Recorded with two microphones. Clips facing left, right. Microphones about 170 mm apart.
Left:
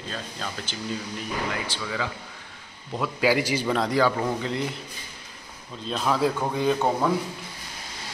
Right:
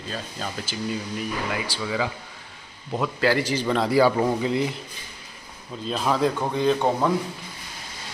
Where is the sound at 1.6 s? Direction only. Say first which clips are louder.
Right 4 dB; 15° right (ahead or behind).